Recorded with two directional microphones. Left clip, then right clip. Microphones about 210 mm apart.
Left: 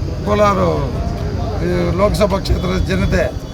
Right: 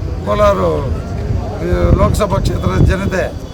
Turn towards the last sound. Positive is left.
turn(degrees=-15)  # may be behind; listen again after turning